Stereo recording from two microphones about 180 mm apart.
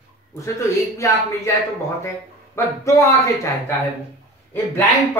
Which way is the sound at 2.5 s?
15° left (ahead or behind).